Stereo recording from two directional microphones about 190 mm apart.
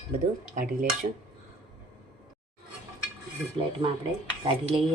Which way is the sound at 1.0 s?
35° right (ahead or behind).